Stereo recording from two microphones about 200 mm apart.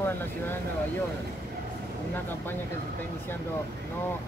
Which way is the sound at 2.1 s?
10° left (ahead or behind).